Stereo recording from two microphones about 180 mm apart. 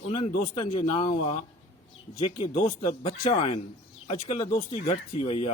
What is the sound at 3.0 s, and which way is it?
Speech, 30° left (ahead or behind).